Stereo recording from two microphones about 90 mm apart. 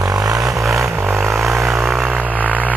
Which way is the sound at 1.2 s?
Centre (ahead or behind).